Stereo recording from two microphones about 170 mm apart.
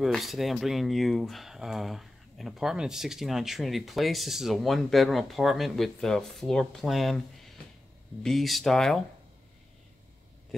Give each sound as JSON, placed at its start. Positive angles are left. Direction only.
{"t": 0.0, "sound": "speech", "side_deg": 0}